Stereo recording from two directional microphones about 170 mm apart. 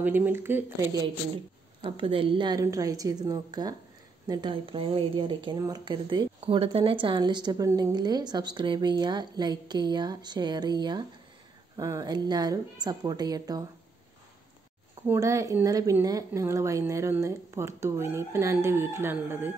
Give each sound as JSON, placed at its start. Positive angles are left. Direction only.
{"t": 0.0, "sound": "speech", "side_deg": -10}
{"t": 1.8, "sound": "speech", "side_deg": -30}
{"t": 15.0, "sound": "speech", "side_deg": -20}